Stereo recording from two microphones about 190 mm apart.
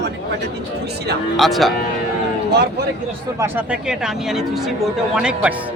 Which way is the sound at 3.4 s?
5° right (ahead or behind).